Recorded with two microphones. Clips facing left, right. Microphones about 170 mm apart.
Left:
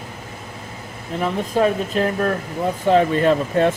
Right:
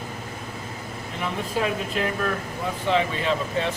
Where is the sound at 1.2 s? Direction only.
40° left (ahead or behind).